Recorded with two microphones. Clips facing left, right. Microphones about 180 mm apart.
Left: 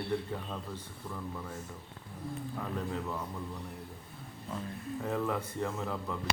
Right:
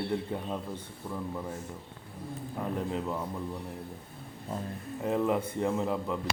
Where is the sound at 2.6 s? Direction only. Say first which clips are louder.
Right 5 dB; 20° right (ahead or behind).